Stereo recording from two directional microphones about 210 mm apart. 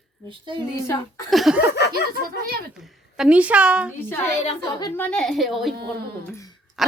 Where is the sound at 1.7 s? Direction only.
50° left (ahead or behind).